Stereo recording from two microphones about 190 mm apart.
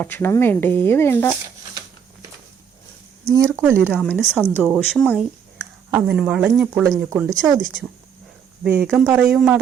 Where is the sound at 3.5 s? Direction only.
10° right (ahead or behind).